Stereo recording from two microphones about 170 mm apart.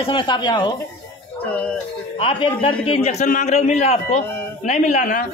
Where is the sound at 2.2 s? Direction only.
30° left (ahead or behind).